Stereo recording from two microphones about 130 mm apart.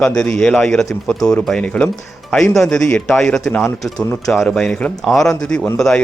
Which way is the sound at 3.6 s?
20° left (ahead or behind).